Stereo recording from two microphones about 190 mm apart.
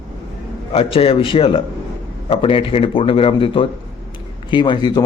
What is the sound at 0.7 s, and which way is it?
Speech, 30° left (ahead or behind).